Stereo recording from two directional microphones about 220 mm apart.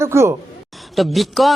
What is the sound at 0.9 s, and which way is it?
Speech, centre (ahead or behind).